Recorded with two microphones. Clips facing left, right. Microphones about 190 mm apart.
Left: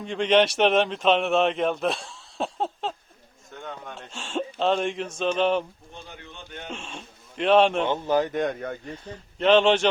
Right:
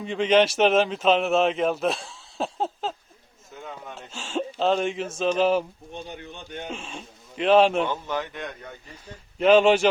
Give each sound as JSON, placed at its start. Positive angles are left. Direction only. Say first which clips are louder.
{"t": 0.0, "sound": "speech", "louder": "right 1 dB", "side_deg": 0}
{"t": 6.1, "sound": "a man's voice", "louder": "right 5 dB", "side_deg": -15}
{"t": 6.7, "sound": "speech", "louder": "right 2 dB", "side_deg": 0}
{"t": 7.9, "sound": "speech", "louder": "left 6 dB", "side_deg": 35}
{"t": 9.4, "sound": "a man's voice", "louder": "right 2 dB", "side_deg": -10}